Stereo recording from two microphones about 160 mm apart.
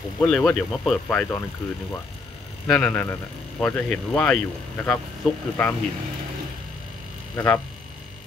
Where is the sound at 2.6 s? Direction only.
10° left (ahead or behind).